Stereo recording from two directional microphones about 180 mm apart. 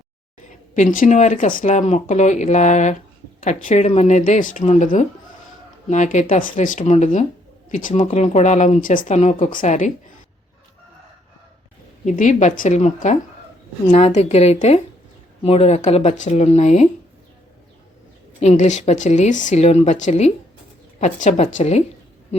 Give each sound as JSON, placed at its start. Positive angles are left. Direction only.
{"t": 0.7, "sound": "a woman's voice", "side_deg": 50}
{"t": 12.0, "sound": "a woman's voice", "side_deg": 45}
{"t": 18.3, "sound": "a woman's voice", "side_deg": 40}